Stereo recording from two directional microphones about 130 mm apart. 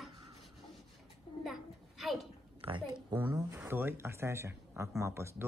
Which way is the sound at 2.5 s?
40° right (ahead or behind).